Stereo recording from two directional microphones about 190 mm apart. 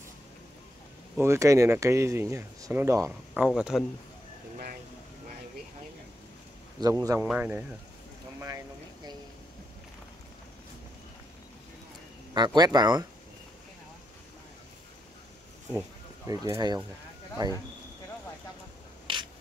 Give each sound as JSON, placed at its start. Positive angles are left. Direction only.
{"t": 1.1, "sound": "speech", "side_deg": -15}
{"t": 3.1, "sound": "speech", "side_deg": -5}
{"t": 6.8, "sound": "speech", "side_deg": -20}
{"t": 7.2, "sound": "speech", "side_deg": -5}
{"t": 12.4, "sound": "speech", "side_deg": -20}
{"t": 16.3, "sound": "speech", "side_deg": -15}
{"t": 19.1, "sound": "a sound", "side_deg": -25}